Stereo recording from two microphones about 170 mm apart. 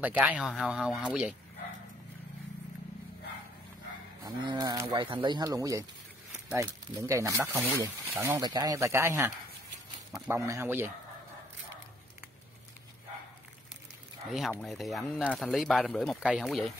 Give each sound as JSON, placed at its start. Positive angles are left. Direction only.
{"t": 0.0, "sound": "speech", "side_deg": -10}
{"t": 4.2, "sound": "speech", "side_deg": -25}
{"t": 14.3, "sound": "speech", "side_deg": 0}